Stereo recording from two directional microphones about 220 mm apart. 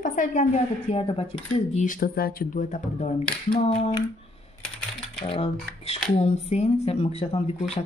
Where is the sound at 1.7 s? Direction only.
35° left (ahead or behind).